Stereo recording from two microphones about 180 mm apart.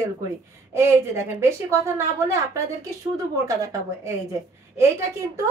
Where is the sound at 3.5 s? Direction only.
20° right (ahead or behind).